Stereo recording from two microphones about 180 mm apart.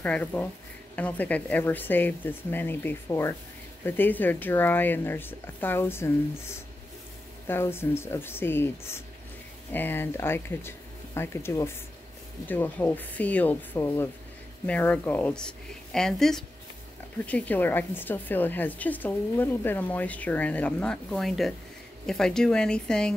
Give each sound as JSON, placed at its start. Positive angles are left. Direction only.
{"t": 0.0, "sound": "a woman's voice", "side_deg": 10}
{"t": 7.4, "sound": "a woman's voice", "side_deg": 15}
{"t": 9.7, "sound": "a woman's voice", "side_deg": 10}